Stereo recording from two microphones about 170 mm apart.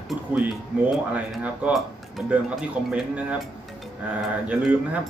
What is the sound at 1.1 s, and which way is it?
Speech, 5° right (ahead or behind).